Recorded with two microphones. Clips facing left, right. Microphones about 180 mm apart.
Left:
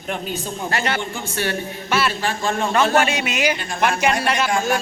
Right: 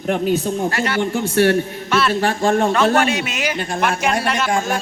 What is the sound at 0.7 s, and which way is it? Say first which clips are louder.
Speech: right 3 dB; 20° left (ahead or behind).